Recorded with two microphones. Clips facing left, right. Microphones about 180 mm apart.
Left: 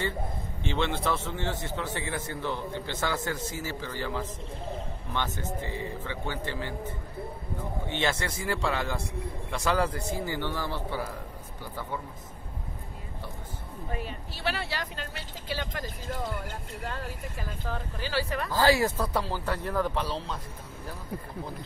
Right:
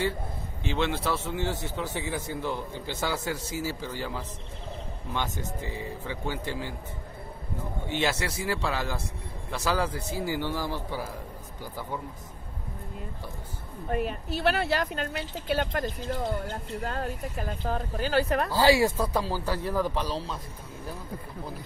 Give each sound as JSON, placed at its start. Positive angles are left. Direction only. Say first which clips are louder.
{"t": 0.7, "sound": "a man's voice", "louder": "right 1 dB", "side_deg": -5}
{"t": 7.9, "sound": "a man's voice", "louder": "right 2 dB", "side_deg": -5}
{"t": 13.8, "sound": "speech", "louder": "right 8 dB", "side_deg": -55}
{"t": 16.8, "sound": "speech", "louder": "right 4 dB", "side_deg": -45}
{"t": 18.5, "sound": "a man's voice", "louder": "right 1 dB", "side_deg": -10}